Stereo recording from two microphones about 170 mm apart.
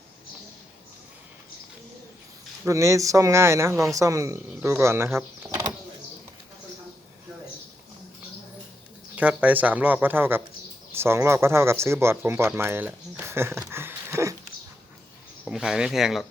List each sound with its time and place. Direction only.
2.6 s speech: 20° right (ahead or behind)
9.1 s speech: 10° right (ahead or behind)
15.4 s speech: 5° right (ahead or behind)